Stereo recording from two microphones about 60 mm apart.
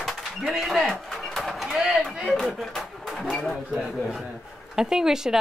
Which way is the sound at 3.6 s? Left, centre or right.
Centre.